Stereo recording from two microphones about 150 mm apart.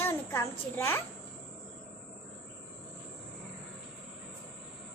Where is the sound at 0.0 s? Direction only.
15° left (ahead or behind).